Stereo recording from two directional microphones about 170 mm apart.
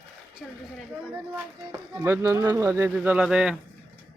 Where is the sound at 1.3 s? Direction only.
15° right (ahead or behind).